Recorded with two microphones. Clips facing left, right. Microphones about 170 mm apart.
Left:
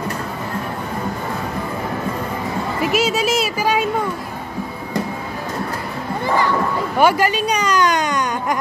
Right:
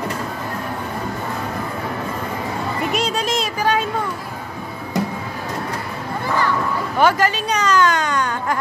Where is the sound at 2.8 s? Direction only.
5° left (ahead or behind).